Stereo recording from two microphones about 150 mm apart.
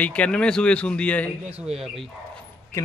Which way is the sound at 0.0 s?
10° left (ahead or behind).